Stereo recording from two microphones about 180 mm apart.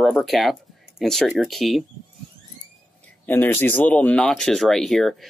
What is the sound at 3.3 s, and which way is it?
Speech, 10° left (ahead or behind).